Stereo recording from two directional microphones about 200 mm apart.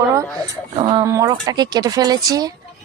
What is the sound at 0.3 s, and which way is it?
Speech, 20° right (ahead or behind).